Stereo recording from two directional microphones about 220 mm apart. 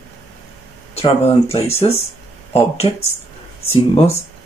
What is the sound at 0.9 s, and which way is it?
Speech, 25° left (ahead or behind).